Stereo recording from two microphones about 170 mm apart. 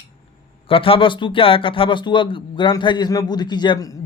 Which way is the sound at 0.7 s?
30° left (ahead or behind).